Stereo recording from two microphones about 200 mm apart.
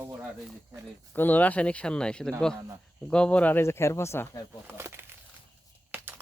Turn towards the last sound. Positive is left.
turn(degrees=-10)  # may be behind; listen again after turning